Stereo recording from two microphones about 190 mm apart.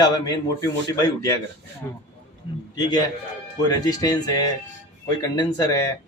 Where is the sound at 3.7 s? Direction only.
20° left (ahead or behind).